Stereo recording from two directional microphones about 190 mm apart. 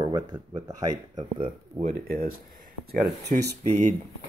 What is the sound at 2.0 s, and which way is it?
Speech, 50° right (ahead or behind).